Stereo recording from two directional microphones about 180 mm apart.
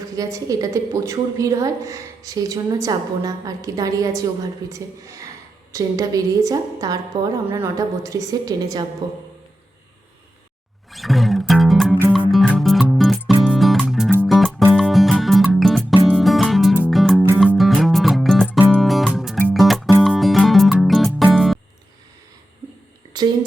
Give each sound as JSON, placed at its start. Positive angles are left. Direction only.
{"t": 0.2, "sound": "a woman's voice", "side_deg": -20}
{"t": 10.9, "sound": "music", "side_deg": 0}
{"t": 23.1, "sound": "a sound", "side_deg": -25}